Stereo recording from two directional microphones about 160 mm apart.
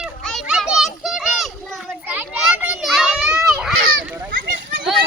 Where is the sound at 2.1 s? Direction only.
10° right (ahead or behind).